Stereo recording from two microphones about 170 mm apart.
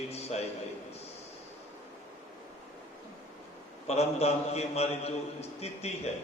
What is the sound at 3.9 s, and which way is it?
A man's voice, 40° left (ahead or behind).